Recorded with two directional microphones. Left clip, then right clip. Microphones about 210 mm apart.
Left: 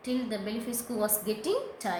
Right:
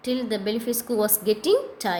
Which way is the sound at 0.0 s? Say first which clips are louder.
Right 7 dB; 40° right (ahead or behind).